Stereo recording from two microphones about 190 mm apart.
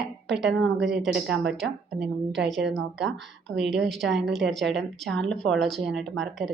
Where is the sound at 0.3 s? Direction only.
70° right (ahead or behind).